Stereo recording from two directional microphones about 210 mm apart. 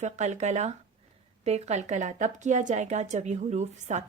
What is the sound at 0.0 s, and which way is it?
A woman's voice, 35° right (ahead or behind).